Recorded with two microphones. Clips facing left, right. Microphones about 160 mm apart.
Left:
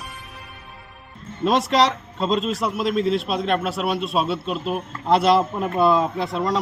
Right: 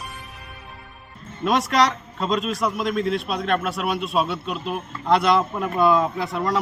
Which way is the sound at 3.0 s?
30° left (ahead or behind).